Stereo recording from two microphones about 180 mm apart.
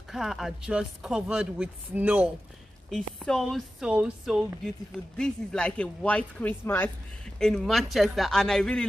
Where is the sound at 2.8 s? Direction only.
5° left (ahead or behind).